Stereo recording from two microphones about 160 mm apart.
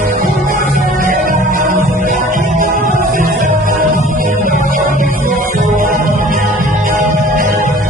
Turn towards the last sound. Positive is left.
turn(degrees=-50)  # may be behind; listen again after turning